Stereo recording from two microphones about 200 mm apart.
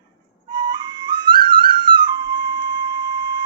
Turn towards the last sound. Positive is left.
turn(degrees=-20)  # may be behind; listen again after turning